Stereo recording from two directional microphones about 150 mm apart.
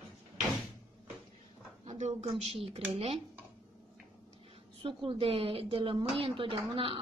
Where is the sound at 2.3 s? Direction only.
40° right (ahead or behind).